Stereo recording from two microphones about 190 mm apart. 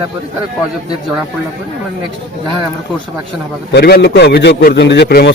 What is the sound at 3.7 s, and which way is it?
A man's voice, 55° left (ahead or behind).